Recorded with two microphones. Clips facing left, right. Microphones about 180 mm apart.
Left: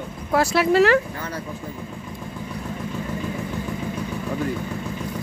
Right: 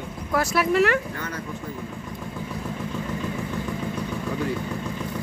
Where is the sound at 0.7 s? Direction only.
90° left.